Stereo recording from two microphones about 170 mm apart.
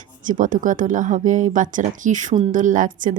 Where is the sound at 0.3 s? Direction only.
50° right (ahead or behind).